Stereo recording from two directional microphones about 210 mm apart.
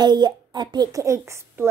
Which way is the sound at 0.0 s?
20° right (ahead or behind).